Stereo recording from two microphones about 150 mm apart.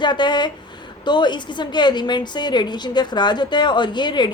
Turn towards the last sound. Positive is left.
turn(degrees=30)  # may be behind; listen again after turning